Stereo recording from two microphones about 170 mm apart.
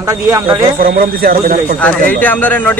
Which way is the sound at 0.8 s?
60° right (ahead or behind).